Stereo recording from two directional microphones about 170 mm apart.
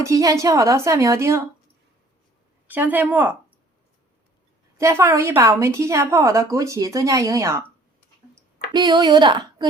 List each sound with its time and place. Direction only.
0.0 s a woman's voice: 20° right (ahead or behind)
2.6 s a woman's voice: 10° right (ahead or behind)
4.8 s a woman's voice: 15° right (ahead or behind)
8.7 s a woman's voice: 25° right (ahead or behind)